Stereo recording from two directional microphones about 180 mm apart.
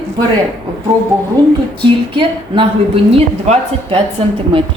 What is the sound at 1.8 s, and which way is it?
A woman's voice, 25° right (ahead or behind).